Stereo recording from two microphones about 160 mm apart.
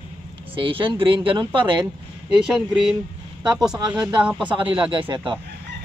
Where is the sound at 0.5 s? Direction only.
35° right (ahead or behind).